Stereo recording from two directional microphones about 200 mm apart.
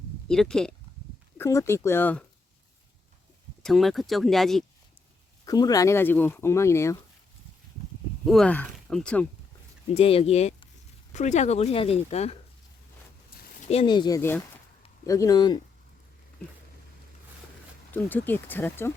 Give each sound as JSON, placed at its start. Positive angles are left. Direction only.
{"t": 0.3, "sound": "speech", "side_deg": 5}
{"t": 1.4, "sound": "speech", "side_deg": 15}
{"t": 3.6, "sound": "speech", "side_deg": 0}
{"t": 5.5, "sound": "speech", "side_deg": 20}
{"t": 8.2, "sound": "speech", "side_deg": 0}
{"t": 9.9, "sound": "speech", "side_deg": 30}
{"t": 13.3, "sound": "a sound", "side_deg": 35}
{"t": 14.2, "sound": "speech", "side_deg": 10}
{"t": 17.9, "sound": "speech", "side_deg": 10}